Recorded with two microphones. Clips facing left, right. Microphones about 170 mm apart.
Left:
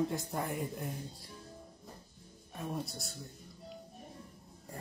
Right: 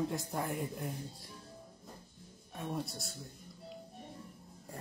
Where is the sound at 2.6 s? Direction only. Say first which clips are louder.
Even; centre (ahead or behind).